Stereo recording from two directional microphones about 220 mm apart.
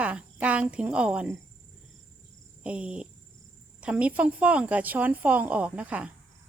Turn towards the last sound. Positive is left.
turn(degrees=-5)  # may be behind; listen again after turning